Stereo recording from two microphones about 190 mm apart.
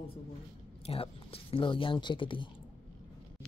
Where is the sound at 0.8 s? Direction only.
30° left (ahead or behind).